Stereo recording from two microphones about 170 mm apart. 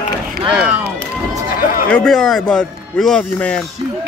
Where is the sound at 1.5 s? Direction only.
55° left (ahead or behind).